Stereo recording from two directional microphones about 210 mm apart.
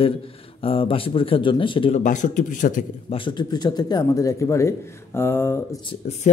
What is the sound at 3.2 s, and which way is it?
A man's voice, 20° left (ahead or behind).